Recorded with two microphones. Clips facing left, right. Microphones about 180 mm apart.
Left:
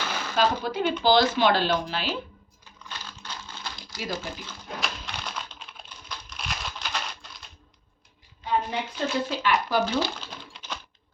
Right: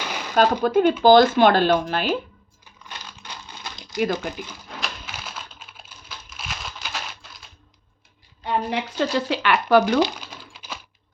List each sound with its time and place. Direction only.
0.3 s speech: 50° right (ahead or behind)
3.2 s typing: 20° right (ahead or behind)
3.9 s speech: 60° right (ahead or behind)
4.8 s typing: 5° right (ahead or behind)
8.4 s speech: 75° right (ahead or behind)
10.0 s speech: 15° right (ahead or behind)
10.5 s typing: 5° right (ahead or behind)